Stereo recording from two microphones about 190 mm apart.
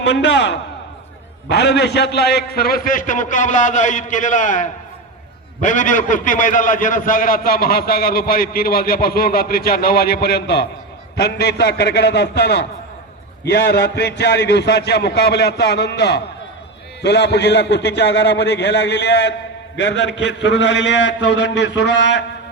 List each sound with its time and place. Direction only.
0.0 s a man's voice: 65° left (ahead or behind)